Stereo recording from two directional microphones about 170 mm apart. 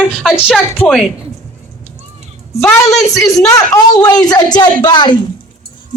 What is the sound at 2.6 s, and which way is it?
A woman's voice, 20° left (ahead or behind).